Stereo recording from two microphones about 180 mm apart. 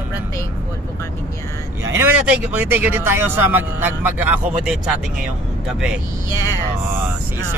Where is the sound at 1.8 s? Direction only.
15° right (ahead or behind).